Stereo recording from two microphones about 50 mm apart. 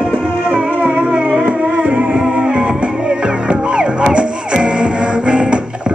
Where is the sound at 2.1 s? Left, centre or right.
Centre.